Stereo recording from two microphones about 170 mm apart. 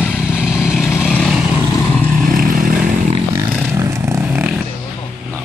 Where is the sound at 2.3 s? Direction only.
55° right (ahead or behind).